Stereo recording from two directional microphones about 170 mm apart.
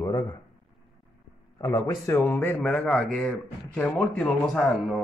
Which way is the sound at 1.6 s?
20° left (ahead or behind).